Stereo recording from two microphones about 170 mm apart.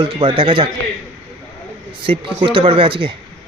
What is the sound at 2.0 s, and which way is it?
A man's voice, 30° right (ahead or behind).